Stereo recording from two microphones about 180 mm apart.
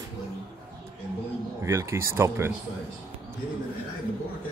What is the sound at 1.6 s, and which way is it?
Speech, 15° right (ahead or behind).